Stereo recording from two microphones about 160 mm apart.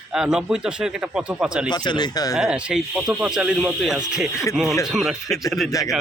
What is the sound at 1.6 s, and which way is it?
Speech, 25° left (ahead or behind).